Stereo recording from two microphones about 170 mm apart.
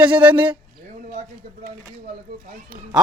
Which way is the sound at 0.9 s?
50° right (ahead or behind).